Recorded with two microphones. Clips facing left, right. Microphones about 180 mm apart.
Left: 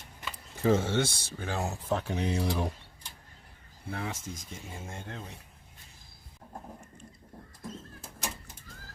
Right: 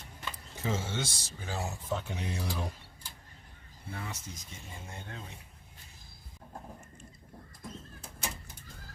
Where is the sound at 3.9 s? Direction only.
65° left (ahead or behind).